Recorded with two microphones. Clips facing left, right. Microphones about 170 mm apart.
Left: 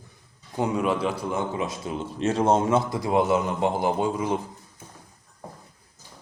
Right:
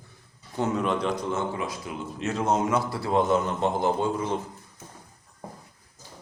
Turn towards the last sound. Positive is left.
turn(degrees=10)  # may be behind; listen again after turning